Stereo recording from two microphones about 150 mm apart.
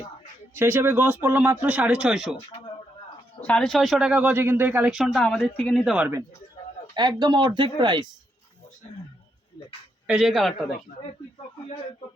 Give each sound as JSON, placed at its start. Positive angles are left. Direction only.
{"t": 0.5, "sound": "speech", "side_deg": -15}
{"t": 3.4, "sound": "speech", "side_deg": 5}
{"t": 4.9, "sound": "speech", "side_deg": 0}
{"t": 6.9, "sound": "speech", "side_deg": -30}
{"t": 10.1, "sound": "speech", "side_deg": -5}